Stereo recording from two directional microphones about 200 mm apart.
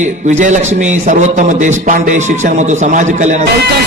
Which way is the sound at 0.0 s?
35° right (ahead or behind).